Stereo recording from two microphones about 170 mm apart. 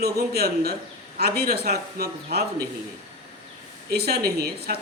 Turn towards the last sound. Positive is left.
turn(degrees=-65)  # may be behind; listen again after turning